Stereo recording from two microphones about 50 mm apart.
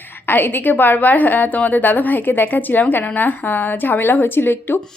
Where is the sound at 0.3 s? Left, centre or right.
Left.